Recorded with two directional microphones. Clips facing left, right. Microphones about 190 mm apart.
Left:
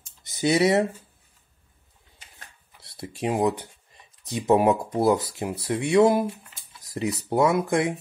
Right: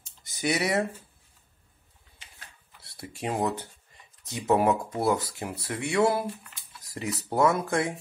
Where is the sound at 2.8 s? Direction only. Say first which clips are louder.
Left 5 dB; 20° left (ahead or behind).